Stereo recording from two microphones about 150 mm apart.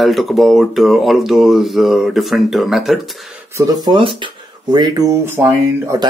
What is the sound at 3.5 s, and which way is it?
Speech, 25° right (ahead or behind).